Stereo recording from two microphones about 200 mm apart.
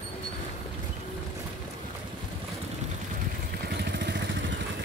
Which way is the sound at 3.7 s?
60° right (ahead or behind).